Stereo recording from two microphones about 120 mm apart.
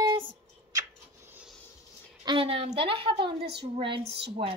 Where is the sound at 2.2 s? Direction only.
50° right (ahead or behind).